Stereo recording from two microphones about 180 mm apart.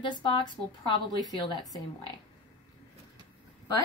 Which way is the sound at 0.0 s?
25° left (ahead or behind).